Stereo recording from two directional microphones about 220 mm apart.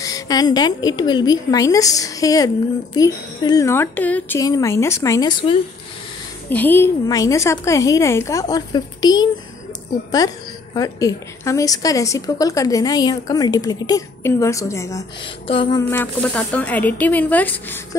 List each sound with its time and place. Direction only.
0.0 s a woman's voice: 15° left (ahead or behind)
6.5 s a woman's voice: 10° left (ahead or behind); by 15.8 s 25° left (ahead or behind)
15.9 s a woman's voice: 5° left (ahead or behind)